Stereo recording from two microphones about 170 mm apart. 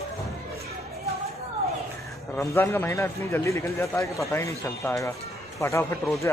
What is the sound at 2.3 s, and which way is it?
A man's voice, 15° left (ahead or behind).